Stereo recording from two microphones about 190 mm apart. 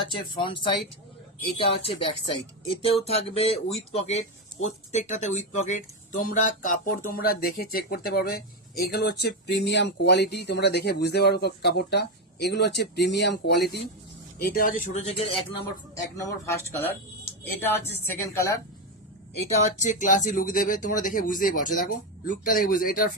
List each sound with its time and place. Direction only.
0.0 s speech: 25° left (ahead or behind)
1.8 s speech: 25° left (ahead or behind)
16.1 s a woman's voice: 15° left (ahead or behind)
19.8 s speech: 40° left (ahead or behind)